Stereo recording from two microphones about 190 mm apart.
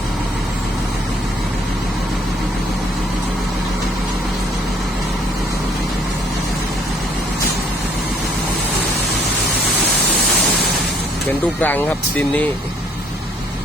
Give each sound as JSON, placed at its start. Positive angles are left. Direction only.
{"t": 11.6, "sound": "speech", "side_deg": 10}